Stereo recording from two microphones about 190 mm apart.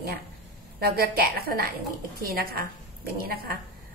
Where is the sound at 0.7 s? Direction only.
55° right (ahead or behind).